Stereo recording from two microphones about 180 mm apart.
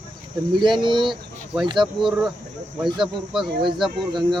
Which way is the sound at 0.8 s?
25° right (ahead or behind).